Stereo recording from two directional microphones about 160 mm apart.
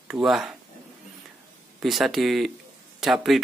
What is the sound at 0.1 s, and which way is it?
Speech, centre (ahead or behind).